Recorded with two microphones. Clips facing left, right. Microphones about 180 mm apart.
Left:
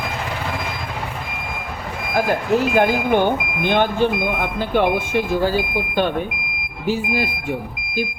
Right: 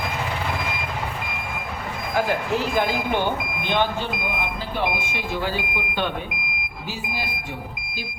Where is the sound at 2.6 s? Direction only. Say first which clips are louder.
Left 9 dB; 55° left (ahead or behind).